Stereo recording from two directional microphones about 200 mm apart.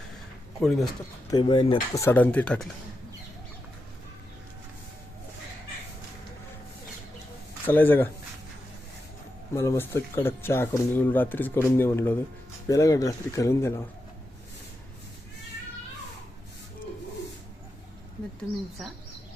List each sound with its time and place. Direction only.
0.6 s speech: centre (ahead or behind)
1.3 s speech: 20° left (ahead or behind)
2.0 s speech: 10° left (ahead or behind)
7.7 s speech: 10° left (ahead or behind)
9.6 s speech: 15° left (ahead or behind)